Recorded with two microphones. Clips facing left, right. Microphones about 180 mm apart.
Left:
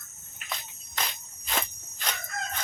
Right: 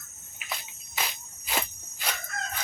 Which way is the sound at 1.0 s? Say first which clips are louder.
Even; 5° right (ahead or behind).